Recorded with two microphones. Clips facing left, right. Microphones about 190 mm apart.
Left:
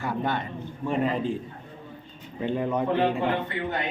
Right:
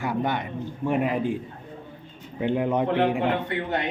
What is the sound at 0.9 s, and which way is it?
Speech, 15° right (ahead or behind).